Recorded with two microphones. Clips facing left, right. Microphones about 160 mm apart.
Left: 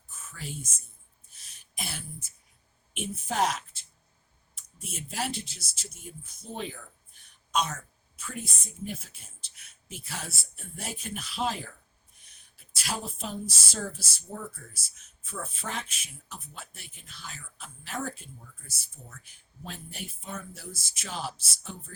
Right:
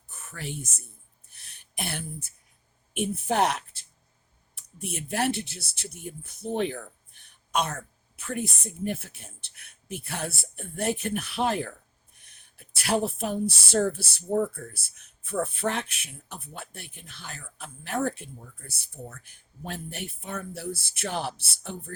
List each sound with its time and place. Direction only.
0.1 s speech: 65° right (ahead or behind)
1.3 s a sound: 60° right (ahead or behind)
2.9 s speech: 60° right (ahead or behind)